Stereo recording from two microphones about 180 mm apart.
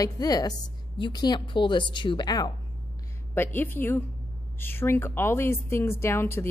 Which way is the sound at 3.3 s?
10° left (ahead or behind).